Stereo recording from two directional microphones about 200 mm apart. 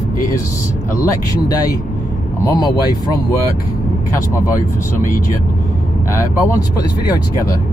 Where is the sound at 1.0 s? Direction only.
20° left (ahead or behind).